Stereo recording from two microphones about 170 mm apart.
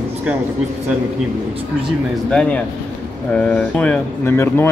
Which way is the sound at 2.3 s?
5° left (ahead or behind).